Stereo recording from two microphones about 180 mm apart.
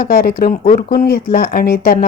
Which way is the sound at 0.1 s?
55° left (ahead or behind).